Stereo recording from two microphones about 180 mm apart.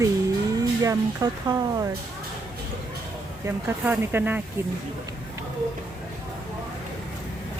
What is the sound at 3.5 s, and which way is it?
Speech, 10° right (ahead or behind).